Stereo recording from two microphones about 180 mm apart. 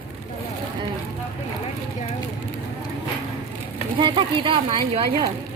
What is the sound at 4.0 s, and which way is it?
A woman's voice, 25° right (ahead or behind).